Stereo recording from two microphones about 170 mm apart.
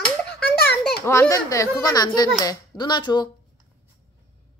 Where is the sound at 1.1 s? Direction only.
15° left (ahead or behind).